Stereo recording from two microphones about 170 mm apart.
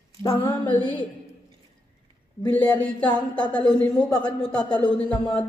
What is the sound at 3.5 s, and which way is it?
Speech, 5° left (ahead or behind).